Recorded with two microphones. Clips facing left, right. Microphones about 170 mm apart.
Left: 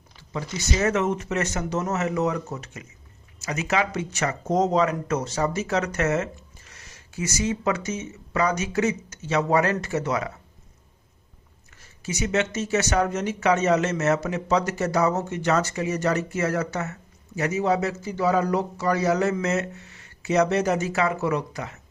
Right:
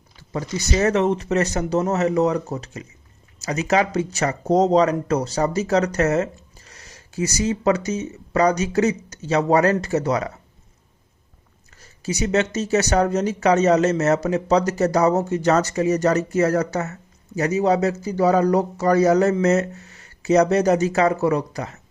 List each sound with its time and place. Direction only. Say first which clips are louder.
0.3 s speech: right 4 dB; 35° right (ahead or behind)
11.8 s speech: right 4 dB; 35° right (ahead or behind)